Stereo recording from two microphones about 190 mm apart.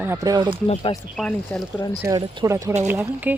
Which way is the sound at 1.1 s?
5° left (ahead or behind).